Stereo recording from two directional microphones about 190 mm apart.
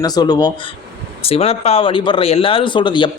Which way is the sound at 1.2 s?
30° left (ahead or behind).